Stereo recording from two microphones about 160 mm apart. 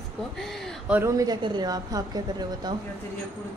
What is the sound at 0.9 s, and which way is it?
A woman's voice, 15° right (ahead or behind).